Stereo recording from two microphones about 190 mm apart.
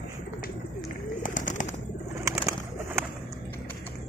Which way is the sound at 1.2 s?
40° left (ahead or behind).